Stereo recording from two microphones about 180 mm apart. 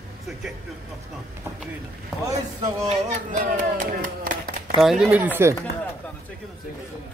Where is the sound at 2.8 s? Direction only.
45° right (ahead or behind).